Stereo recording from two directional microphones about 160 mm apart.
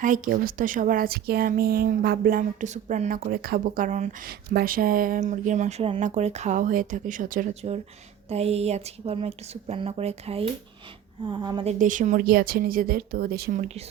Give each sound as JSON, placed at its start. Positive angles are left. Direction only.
{"t": 0.0, "sound": "speech", "side_deg": -60}
{"t": 3.3, "sound": "speech", "side_deg": -70}
{"t": 4.3, "sound": "speech", "side_deg": -65}
{"t": 7.6, "sound": "a woman's voice", "side_deg": -35}
{"t": 11.6, "sound": "speech", "side_deg": -50}
{"t": 13.5, "sound": "speech", "side_deg": -50}